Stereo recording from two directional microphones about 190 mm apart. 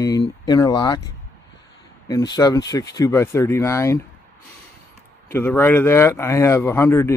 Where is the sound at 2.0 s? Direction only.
20° left (ahead or behind).